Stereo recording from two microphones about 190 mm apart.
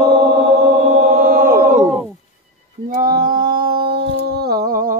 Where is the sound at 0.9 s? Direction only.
45° right (ahead or behind).